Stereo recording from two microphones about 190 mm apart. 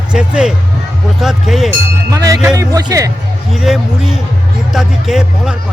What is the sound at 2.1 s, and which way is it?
Speech, 15° right (ahead or behind).